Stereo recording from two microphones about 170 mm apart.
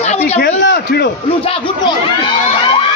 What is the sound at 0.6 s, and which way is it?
Speech, 70° left (ahead or behind).